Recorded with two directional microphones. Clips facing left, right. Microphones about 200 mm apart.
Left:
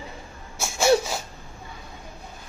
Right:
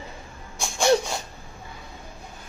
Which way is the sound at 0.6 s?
5° left (ahead or behind).